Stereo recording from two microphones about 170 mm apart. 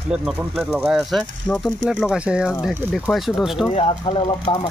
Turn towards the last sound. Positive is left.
turn(degrees=30)  # may be behind; listen again after turning